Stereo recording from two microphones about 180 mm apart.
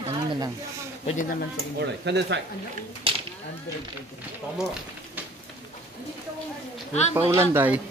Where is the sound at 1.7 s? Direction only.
70° right (ahead or behind).